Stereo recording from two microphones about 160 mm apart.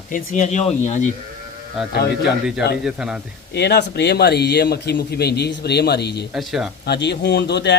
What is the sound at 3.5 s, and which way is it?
A man's voice, 90° left.